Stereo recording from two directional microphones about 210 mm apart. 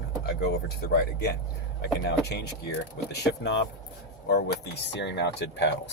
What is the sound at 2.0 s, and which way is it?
Speech, 55° left (ahead or behind).